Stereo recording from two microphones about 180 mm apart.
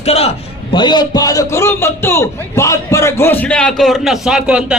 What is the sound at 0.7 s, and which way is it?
A man's voice, 25° left (ahead or behind).